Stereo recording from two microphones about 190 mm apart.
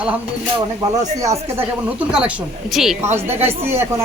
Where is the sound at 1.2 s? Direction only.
15° right (ahead or behind).